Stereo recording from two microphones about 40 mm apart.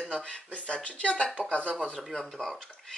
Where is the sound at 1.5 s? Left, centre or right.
Left.